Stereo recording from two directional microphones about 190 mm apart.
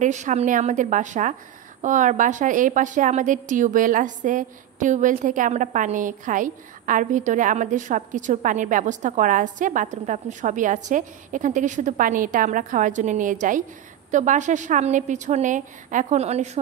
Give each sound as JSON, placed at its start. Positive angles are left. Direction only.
{"t": 0.0, "sound": "a woman's voice", "side_deg": -40}